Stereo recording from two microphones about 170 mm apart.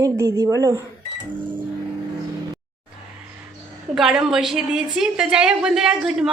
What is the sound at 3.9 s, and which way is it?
A woman's voice, 5° right (ahead or behind).